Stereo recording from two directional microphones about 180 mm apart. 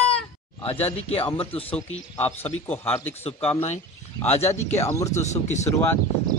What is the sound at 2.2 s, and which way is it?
Speech, 10° left (ahead or behind).